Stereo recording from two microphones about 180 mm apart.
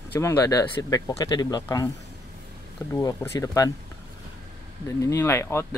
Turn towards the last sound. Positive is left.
turn(degrees=15)  # may be behind; listen again after turning